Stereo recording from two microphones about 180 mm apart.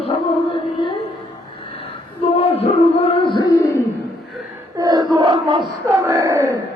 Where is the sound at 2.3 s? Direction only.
35° left (ahead or behind).